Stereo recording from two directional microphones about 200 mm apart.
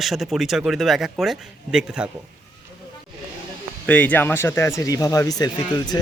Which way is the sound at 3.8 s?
5° left (ahead or behind).